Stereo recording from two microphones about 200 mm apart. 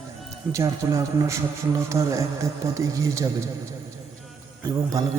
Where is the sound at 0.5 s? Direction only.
15° right (ahead or behind).